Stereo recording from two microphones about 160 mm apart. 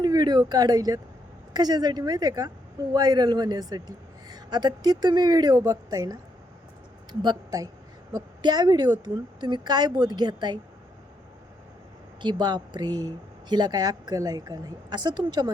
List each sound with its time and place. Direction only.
0.0 s a woman's voice: 25° right (ahead or behind)
12.2 s a woman's voice: 30° right (ahead or behind)